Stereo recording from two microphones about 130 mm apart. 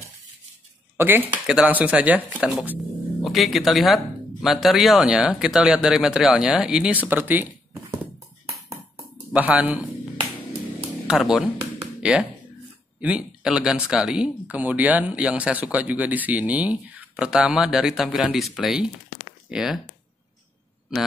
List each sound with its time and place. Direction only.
0.9 s speech: 15° right (ahead or behind)
3.3 s speech: centre (ahead or behind)
9.3 s speech: 10° right (ahead or behind)
11.1 s speech: 5° right (ahead or behind)